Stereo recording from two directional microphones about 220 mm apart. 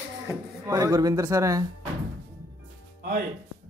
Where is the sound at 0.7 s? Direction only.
15° right (ahead or behind).